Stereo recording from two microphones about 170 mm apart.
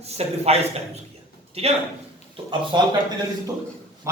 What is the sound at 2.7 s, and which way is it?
Speech, 25° right (ahead or behind).